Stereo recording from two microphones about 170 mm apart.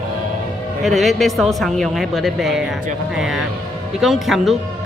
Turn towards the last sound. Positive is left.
turn(degrees=0)  # may be behind; listen again after turning